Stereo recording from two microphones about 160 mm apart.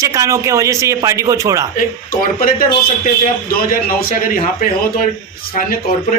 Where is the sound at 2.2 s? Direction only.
60° left (ahead or behind).